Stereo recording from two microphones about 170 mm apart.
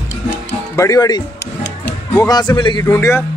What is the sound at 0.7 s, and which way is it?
A man's voice, 20° left (ahead or behind).